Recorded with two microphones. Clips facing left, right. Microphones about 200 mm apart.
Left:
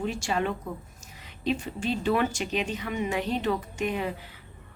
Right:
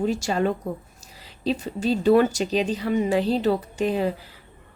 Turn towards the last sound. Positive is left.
turn(degrees=-35)  # may be behind; listen again after turning